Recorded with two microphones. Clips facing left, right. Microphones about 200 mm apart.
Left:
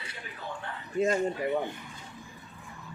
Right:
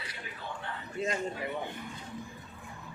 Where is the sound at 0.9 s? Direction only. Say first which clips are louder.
Left 7 dB; 45° left (ahead or behind).